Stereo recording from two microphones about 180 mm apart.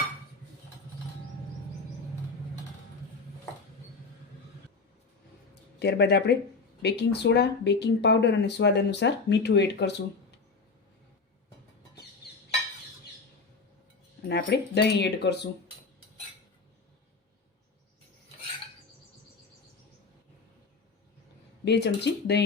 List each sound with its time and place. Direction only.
5.8 s speech: 65° left (ahead or behind)
14.3 s speech: 70° left (ahead or behind)
21.6 s speech: 70° left (ahead or behind)